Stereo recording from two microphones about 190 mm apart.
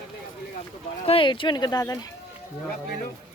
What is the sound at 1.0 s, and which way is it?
Speech, 30° left (ahead or behind).